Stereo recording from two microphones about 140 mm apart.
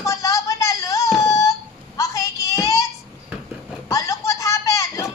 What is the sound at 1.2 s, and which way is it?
Child singing, 20° left (ahead or behind).